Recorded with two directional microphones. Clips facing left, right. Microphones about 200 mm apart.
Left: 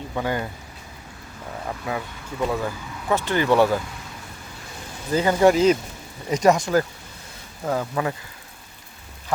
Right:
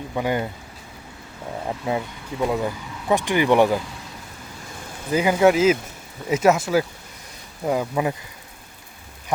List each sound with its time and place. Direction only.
0.1 s speech: 15° right (ahead or behind)
1.6 s speech: 25° right (ahead or behind)
5.1 s speech: 10° right (ahead or behind)